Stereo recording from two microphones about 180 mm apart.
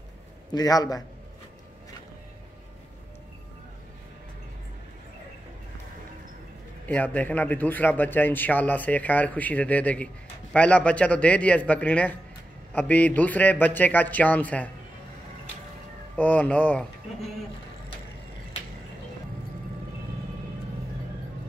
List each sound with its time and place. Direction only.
0.5 s a man's voice: 20° left (ahead or behind)
6.9 s speech: 10° left (ahead or behind)
16.2 s speech: 10° left (ahead or behind)